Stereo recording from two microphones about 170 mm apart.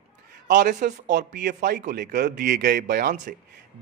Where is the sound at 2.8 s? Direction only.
60° right (ahead or behind).